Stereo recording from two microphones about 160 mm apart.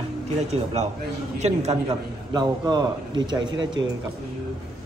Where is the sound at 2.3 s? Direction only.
25° right (ahead or behind).